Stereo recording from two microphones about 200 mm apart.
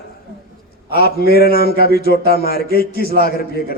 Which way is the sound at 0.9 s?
50° left (ahead or behind).